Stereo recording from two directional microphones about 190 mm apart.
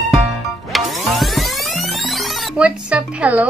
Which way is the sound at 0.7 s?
Centre (ahead or behind).